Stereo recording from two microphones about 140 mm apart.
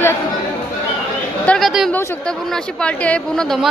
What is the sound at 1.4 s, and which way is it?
Speech, 5° left (ahead or behind).